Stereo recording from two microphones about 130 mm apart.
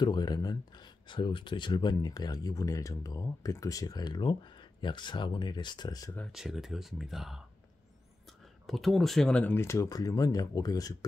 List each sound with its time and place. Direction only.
0.0 s speech: 35° left (ahead or behind)
6.3 s speech: centre (ahead or behind)
8.6 s speech: centre (ahead or behind); by 11.1 s 25° left (ahead or behind)